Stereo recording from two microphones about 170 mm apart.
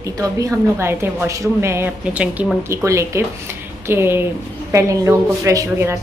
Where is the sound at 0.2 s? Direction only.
20° right (ahead or behind).